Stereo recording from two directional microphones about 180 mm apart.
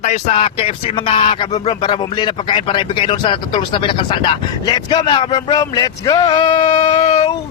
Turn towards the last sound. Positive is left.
turn(degrees=40)  # may be behind; listen again after turning